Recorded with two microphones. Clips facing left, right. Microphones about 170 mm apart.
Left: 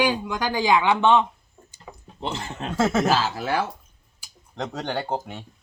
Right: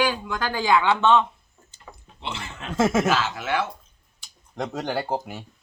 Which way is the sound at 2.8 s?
10° right (ahead or behind).